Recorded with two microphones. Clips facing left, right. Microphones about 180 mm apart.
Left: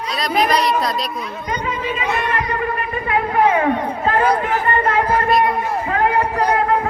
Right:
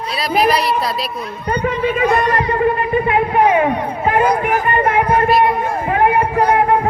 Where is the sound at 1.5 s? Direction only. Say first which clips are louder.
Right 7 dB; 55° right (ahead or behind).